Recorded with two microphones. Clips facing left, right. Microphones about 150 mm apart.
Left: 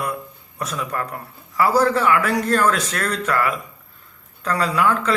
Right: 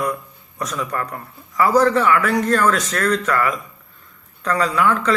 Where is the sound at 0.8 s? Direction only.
5° left (ahead or behind).